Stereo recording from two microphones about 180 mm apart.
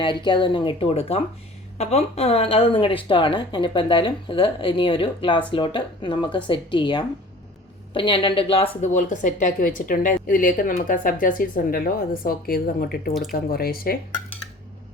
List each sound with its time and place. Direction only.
0.0 s a woman's voice: 25° left (ahead or behind); by 14.0 s 55° left (ahead or behind)